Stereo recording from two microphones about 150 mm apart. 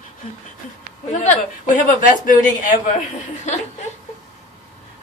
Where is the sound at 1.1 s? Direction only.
55° left (ahead or behind).